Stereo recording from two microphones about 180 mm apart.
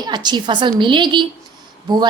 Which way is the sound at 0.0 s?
25° right (ahead or behind).